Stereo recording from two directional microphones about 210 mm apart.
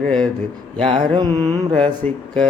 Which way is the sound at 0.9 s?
25° right (ahead or behind).